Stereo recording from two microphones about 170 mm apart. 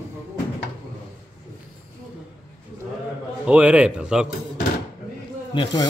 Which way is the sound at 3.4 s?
5° right (ahead or behind).